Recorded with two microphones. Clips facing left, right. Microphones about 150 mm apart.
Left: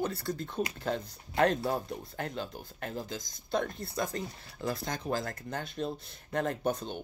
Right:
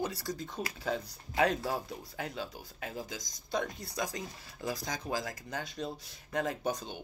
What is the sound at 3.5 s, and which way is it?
Speech, 55° left (ahead or behind).